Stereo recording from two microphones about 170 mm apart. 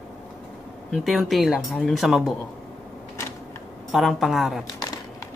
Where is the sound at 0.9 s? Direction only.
Centre (ahead or behind).